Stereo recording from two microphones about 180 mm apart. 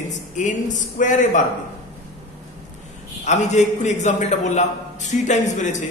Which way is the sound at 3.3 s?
40° left (ahead or behind).